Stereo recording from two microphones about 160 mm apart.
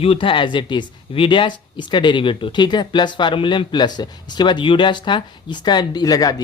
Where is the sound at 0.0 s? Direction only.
35° left (ahead or behind).